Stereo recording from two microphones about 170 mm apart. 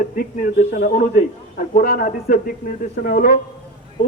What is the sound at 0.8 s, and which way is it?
A man's voice, 60° left (ahead or behind).